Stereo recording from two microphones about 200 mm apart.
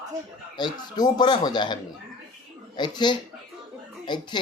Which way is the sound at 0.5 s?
20° left (ahead or behind).